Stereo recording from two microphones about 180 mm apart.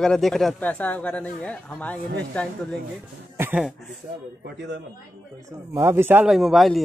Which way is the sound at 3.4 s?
10° right (ahead or behind).